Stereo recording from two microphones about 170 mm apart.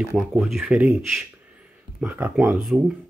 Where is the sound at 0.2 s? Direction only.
5° right (ahead or behind).